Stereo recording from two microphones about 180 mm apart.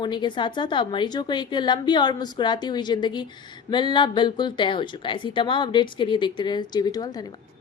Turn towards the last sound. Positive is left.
turn(degrees=20)  # may be behind; listen again after turning